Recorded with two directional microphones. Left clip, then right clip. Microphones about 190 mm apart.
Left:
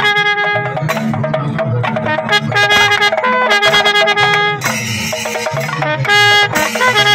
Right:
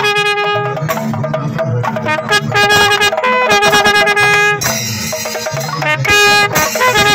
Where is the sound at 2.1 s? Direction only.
50° right (ahead or behind).